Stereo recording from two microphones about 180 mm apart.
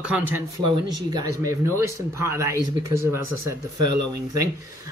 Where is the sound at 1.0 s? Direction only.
20° right (ahead or behind).